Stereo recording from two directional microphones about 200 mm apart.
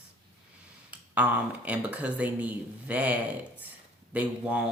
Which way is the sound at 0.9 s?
5° right (ahead or behind).